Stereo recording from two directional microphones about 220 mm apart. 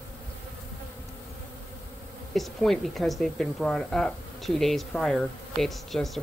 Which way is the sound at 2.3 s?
Centre (ahead or behind).